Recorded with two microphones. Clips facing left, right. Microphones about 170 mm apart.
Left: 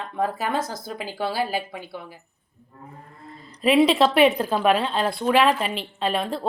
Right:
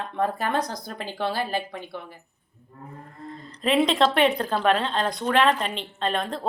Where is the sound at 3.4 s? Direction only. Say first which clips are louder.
Left 4 dB; 10° left (ahead or behind).